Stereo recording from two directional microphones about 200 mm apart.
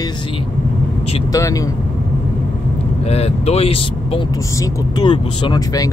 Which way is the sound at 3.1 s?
30° left (ahead or behind).